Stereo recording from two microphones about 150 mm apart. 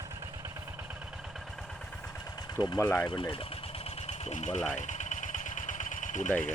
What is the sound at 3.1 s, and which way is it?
Speech, 35° left (ahead or behind).